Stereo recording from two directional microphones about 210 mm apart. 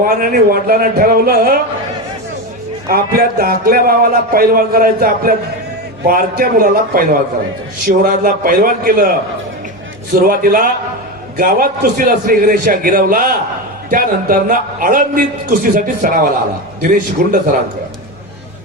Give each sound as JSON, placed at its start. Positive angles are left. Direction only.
{"t": 0.0, "sound": "a man's voice", "side_deg": -45}
{"t": 2.9, "sound": "a man's voice", "side_deg": -45}
{"t": 10.2, "sound": "a man's voice", "side_deg": -40}